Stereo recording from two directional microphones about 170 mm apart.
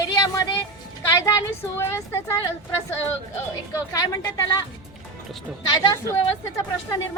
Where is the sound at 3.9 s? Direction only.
20° left (ahead or behind).